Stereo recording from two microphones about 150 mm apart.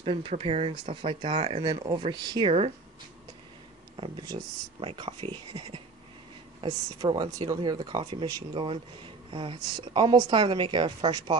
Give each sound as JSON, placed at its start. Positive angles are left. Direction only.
{"t": 0.0, "sound": "speech", "side_deg": -40}
{"t": 3.9, "sound": "speech", "side_deg": -35}